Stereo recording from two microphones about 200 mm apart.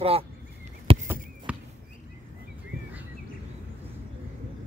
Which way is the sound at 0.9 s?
25° right (ahead or behind).